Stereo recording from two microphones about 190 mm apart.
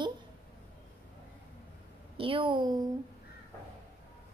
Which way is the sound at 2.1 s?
25° right (ahead or behind).